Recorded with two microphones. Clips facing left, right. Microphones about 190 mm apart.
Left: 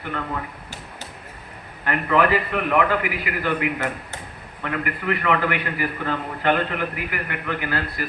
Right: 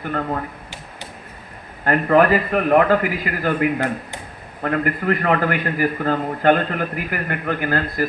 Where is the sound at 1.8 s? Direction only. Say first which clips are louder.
Right 5 dB; 40° right (ahead or behind).